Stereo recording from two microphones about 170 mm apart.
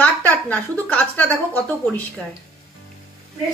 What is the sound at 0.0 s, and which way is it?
Speech, 10° left (ahead or behind).